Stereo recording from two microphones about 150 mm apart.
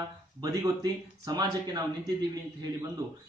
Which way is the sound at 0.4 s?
20° right (ahead or behind).